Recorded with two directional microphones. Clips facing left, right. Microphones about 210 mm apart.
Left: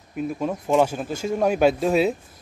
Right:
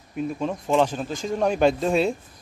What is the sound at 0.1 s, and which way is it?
Speech, 5° left (ahead or behind).